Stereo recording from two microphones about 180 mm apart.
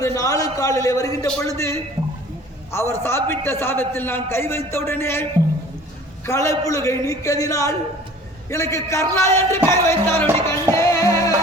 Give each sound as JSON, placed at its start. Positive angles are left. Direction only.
{"t": 0.0, "sound": "a man's voice", "side_deg": 20}
{"t": 6.2, "sound": "a man's voice", "side_deg": 15}
{"t": 10.4, "sound": "music", "side_deg": 15}